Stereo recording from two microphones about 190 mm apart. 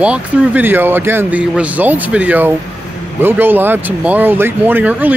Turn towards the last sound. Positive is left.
turn(degrees=-10)  # may be behind; listen again after turning